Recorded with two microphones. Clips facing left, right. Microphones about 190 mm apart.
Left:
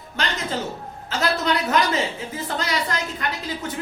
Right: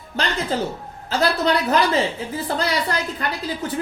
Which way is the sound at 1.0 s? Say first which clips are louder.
Right 3 dB; 35° right (ahead or behind).